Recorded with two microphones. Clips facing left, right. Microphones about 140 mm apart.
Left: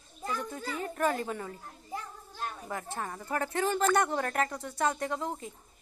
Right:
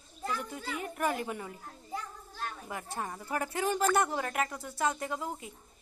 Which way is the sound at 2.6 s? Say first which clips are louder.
Left 1 dB; 15° right (ahead or behind).